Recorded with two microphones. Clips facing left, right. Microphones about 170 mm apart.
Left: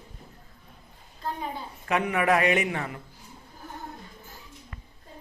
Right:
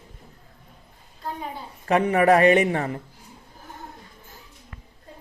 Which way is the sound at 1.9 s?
35° right (ahead or behind).